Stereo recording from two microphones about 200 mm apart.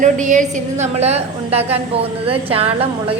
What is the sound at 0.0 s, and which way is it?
A woman's voice, 40° right (ahead or behind).